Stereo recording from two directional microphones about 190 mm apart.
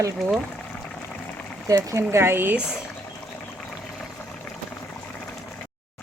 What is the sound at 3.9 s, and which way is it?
Boiling, 5° left (ahead or behind).